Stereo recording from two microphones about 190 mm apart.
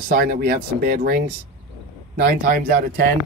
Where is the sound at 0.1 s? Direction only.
50° right (ahead or behind).